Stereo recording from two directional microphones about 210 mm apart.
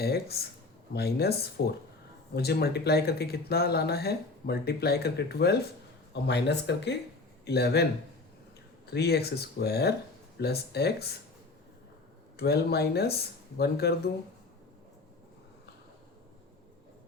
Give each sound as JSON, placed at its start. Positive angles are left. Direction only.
{"t": 0.0, "sound": "speech", "side_deg": 50}
{"t": 8.9, "sound": "speech", "side_deg": 50}
{"t": 12.4, "sound": "speech", "side_deg": 50}